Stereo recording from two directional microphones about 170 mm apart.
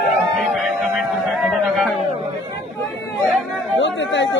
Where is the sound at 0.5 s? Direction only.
Centre (ahead or behind).